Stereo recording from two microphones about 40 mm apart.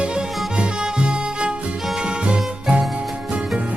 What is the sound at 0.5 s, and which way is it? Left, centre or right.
Music, right.